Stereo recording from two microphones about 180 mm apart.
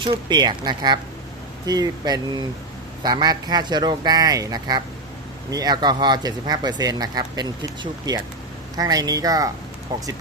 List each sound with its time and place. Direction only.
0.0 s speech: 25° right (ahead or behind)